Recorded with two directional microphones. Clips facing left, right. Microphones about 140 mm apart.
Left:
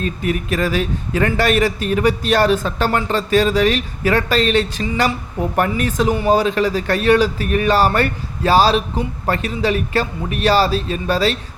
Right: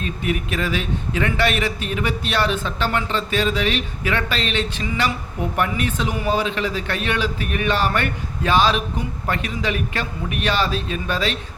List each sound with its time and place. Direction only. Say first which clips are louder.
0.0 s a man's voice: left 3 dB; 40° left (ahead or behind)